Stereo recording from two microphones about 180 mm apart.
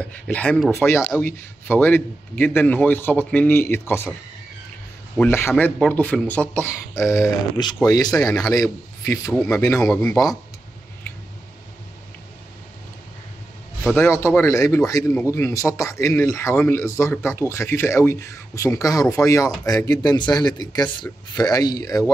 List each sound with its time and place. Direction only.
0.0 s speech: 5° left (ahead or behind)
5.1 s a man's voice: 10° left (ahead or behind)
13.9 s speech: 15° left (ahead or behind)